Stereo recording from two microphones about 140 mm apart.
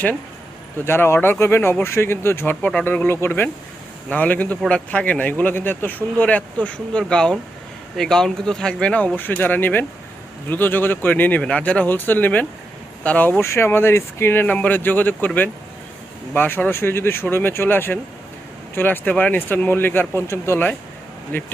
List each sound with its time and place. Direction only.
0.9 s speech: 15° left (ahead or behind)
16.3 s speech: 15° left (ahead or behind)